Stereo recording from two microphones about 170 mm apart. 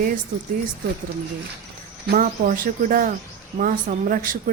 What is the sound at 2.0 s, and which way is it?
Speech, 65° right (ahead or behind).